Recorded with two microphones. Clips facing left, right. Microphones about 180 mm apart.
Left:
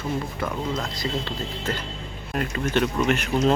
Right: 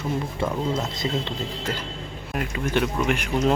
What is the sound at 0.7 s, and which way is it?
Speech, 20° right (ahead or behind).